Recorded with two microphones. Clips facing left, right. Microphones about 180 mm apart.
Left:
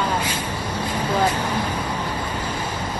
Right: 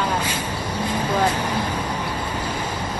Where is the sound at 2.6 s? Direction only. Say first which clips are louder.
Even; 10° left (ahead or behind).